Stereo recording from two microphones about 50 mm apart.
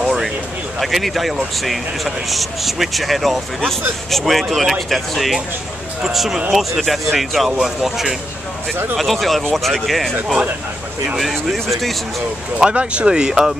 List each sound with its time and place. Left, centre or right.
0.7 s speech: centre
11.1 s speech: centre
12.5 s speech: right